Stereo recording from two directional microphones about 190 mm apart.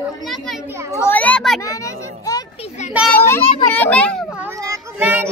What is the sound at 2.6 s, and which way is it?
Speech, 35° left (ahead or behind).